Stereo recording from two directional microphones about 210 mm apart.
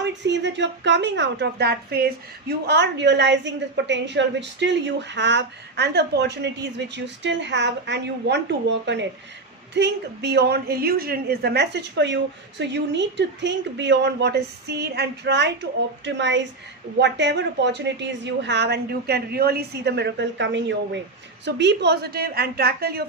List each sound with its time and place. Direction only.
0.0 s a woman's voice: 55° right (ahead or behind)